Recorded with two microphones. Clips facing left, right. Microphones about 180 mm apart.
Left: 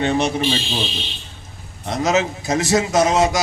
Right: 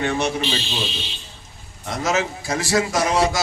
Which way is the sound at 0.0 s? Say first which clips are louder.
Left 3 dB; 20° left (ahead or behind).